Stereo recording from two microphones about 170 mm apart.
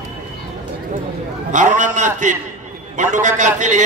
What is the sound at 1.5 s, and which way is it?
A man's voice, 45° right (ahead or behind).